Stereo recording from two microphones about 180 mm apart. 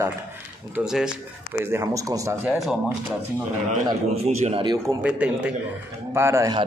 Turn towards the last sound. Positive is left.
turn(degrees=-20)  # may be behind; listen again after turning